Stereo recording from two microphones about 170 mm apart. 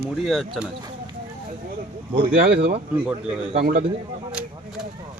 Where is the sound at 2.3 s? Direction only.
60° right (ahead or behind).